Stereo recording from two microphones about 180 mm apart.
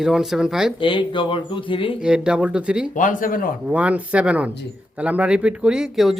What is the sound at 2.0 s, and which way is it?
Speech, 5° right (ahead or behind).